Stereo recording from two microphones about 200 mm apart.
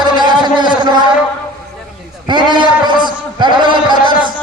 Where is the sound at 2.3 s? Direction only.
20° right (ahead or behind).